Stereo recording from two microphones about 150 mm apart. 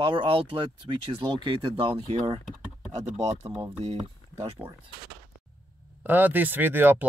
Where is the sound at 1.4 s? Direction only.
35° right (ahead or behind).